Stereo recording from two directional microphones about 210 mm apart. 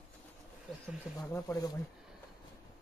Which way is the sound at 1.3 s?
15° left (ahead or behind).